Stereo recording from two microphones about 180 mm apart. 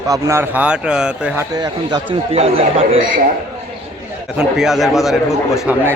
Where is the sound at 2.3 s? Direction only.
30° right (ahead or behind).